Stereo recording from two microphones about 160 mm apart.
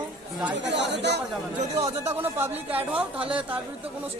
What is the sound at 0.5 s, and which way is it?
Speech, 90° right.